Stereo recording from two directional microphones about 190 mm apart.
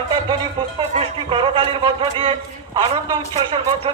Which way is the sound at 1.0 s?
25° right (ahead or behind).